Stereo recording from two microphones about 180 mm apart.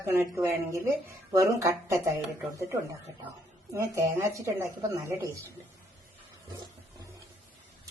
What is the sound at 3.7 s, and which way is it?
Speech, 15° right (ahead or behind).